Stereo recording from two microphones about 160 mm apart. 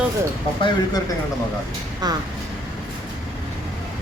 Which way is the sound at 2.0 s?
25° right (ahead or behind).